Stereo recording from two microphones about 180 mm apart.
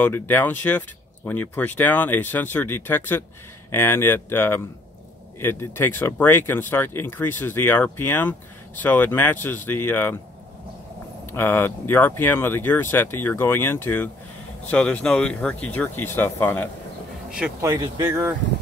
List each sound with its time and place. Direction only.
0.0 s speech: 10° left (ahead or behind)
11.3 s speech: 10° left (ahead or behind)
17.6 s speech: 20° right (ahead or behind)